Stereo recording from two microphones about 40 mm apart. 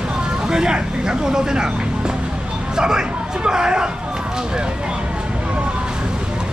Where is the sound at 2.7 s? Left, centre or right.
Centre.